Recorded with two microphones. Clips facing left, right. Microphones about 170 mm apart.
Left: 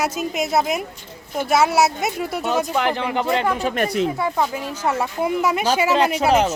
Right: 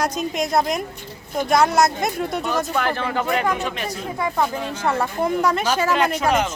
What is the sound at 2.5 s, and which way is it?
Speech, 20° left (ahead or behind).